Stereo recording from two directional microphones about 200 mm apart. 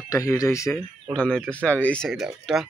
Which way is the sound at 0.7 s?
5° left (ahead or behind).